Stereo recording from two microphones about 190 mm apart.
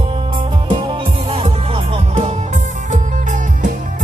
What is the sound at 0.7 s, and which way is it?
Music, 25° right (ahead or behind).